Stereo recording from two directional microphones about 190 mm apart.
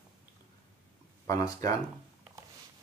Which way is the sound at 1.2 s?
20° left (ahead or behind).